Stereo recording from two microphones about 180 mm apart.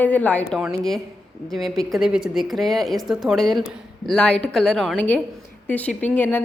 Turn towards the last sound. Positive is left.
turn(degrees=10)  # may be behind; listen again after turning